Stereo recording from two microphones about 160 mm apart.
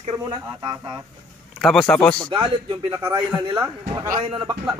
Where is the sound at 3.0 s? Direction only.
15° right (ahead or behind).